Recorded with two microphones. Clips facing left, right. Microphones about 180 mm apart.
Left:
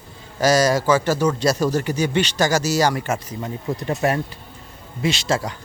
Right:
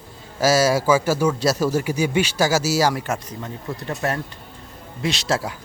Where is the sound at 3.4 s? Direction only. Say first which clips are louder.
Left 4 dB; 15° left (ahead or behind).